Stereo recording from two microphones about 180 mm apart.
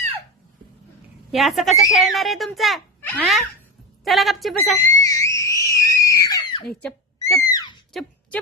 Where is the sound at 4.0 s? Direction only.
Centre (ahead or behind).